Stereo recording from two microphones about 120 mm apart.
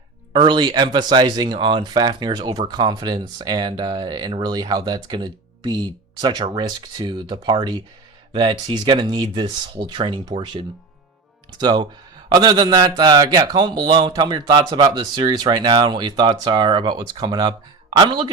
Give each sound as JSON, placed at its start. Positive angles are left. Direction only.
{"t": 0.3, "sound": "speech", "side_deg": -40}
{"t": 11.5, "sound": "speech", "side_deg": -35}